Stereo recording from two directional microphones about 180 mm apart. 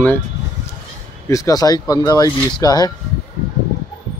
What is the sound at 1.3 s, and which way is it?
Speech, 20° left (ahead or behind).